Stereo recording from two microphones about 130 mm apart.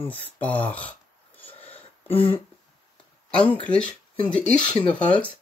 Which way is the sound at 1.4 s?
50° left (ahead or behind).